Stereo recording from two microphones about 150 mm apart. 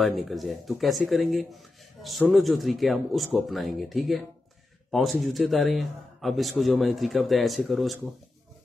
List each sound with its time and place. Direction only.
0.0 s speech: centre (ahead or behind)
5.2 s speech: centre (ahead or behind)